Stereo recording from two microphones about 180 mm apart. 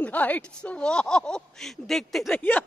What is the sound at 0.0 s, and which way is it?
Speech, 10° left (ahead or behind).